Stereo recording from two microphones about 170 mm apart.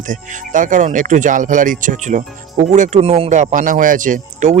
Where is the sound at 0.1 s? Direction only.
50° right (ahead or behind).